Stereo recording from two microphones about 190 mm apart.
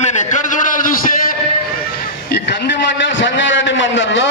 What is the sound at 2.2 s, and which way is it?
A man's voice, 65° left (ahead or behind).